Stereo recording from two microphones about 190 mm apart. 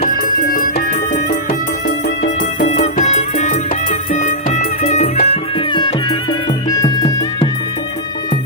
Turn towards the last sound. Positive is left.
turn(degrees=20)  # may be behind; listen again after turning